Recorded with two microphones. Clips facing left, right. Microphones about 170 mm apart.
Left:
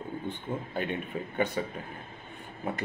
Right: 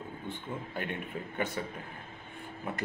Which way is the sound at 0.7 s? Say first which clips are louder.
Left 4 dB; 25° left (ahead or behind).